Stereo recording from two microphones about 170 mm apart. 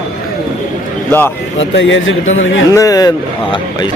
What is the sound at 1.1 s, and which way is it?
Speech, 10° left (ahead or behind).